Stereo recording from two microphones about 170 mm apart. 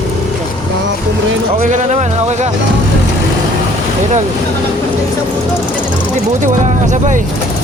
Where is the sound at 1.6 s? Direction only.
45° right (ahead or behind).